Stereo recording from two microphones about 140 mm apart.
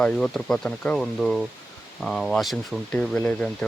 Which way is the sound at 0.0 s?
5° left (ahead or behind).